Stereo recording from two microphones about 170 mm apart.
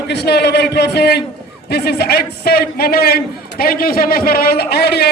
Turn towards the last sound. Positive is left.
turn(degrees=70)  # may be behind; listen again after turning